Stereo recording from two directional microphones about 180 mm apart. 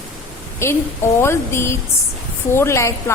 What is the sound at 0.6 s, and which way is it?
A woman's voice, 15° left (ahead or behind).